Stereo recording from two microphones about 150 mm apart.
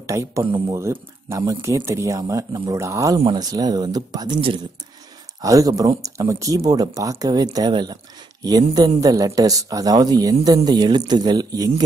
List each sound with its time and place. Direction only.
0.0 s speech: 20° right (ahead or behind)
0.4 s speech: 30° right (ahead or behind)
0.7 s speech: 20° right (ahead or behind)
5.4 s speech: 20° right (ahead or behind)